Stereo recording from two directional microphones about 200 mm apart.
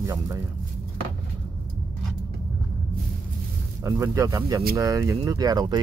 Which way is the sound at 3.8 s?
15° right (ahead or behind).